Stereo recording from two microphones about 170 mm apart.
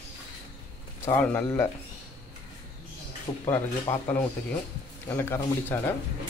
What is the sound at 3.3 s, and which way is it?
Speech, 20° left (ahead or behind).